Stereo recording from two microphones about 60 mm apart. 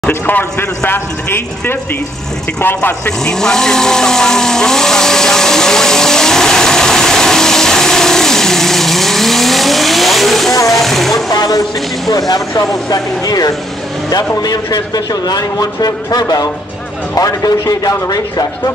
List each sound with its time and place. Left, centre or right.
0.3 s a man's voice: left
3.1 s vehicle: centre
10.7 s speech: centre
11.2 s a man's voice: left
12.5 s a man's voice: left
17.1 s a man's voice: left